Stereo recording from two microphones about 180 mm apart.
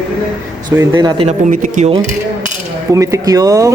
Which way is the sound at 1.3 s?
45° right (ahead or behind).